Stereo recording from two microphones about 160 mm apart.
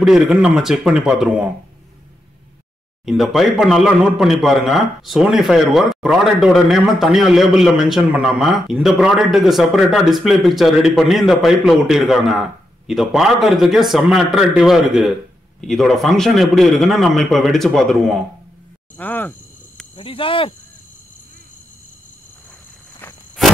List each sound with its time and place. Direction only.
0.0 s a man's voice: 5° right (ahead or behind)
3.1 s a man's voice: centre (ahead or behind)
20.0 s speech: 35° left (ahead or behind)